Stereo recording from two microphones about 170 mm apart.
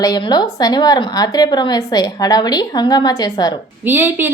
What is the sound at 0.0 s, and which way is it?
A woman's voice, 25° left (ahead or behind).